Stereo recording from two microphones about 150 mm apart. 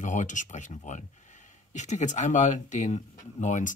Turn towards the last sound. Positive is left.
turn(degrees=55)  # may be behind; listen again after turning